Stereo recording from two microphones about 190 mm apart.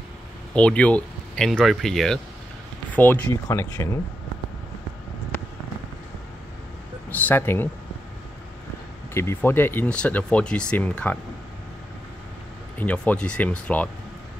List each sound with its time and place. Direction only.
0.6 s speech: 5° left (ahead or behind)
7.1 s speech: 10° left (ahead or behind)
9.1 s speech: 15° left (ahead or behind)
12.7 s speech: 5° left (ahead or behind)